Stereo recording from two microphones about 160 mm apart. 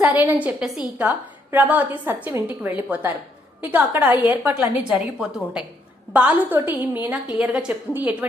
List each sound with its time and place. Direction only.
0.0 s a woman's voice: 10° right (ahead or behind)